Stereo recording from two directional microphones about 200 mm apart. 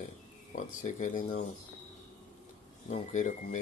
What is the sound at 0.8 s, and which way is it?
Speech, 35° left (ahead or behind).